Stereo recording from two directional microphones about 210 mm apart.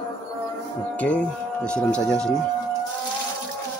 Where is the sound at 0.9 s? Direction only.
5° left (ahead or behind).